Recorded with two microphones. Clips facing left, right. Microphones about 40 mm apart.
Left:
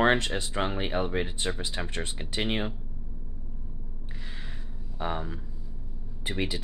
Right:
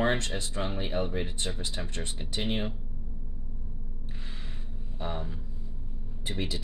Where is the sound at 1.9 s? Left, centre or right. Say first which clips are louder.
Left 3 dB; left.